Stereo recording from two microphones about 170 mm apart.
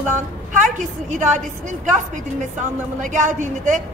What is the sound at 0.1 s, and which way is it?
A woman's voice, 45° right (ahead or behind).